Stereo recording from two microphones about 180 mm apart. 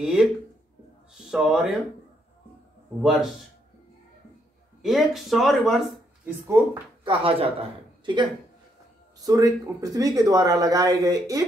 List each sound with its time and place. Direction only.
0.0 s a man's voice: 5° right (ahead or behind)
3.0 s a man's voice: centre (ahead or behind)
4.8 s speech: centre (ahead or behind)
7.1 s speech: 30° right (ahead or behind)